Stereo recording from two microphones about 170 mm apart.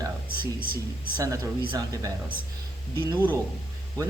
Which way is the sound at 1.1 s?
20° right (ahead or behind).